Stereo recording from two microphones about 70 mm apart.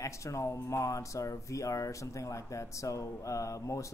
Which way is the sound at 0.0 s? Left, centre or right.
Left.